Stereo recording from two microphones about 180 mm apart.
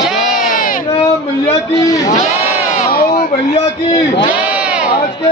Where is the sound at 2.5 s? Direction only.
35° left (ahead or behind).